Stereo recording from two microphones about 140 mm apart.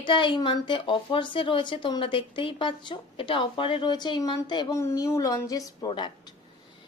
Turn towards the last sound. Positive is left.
turn(degrees=30)  # may be behind; listen again after turning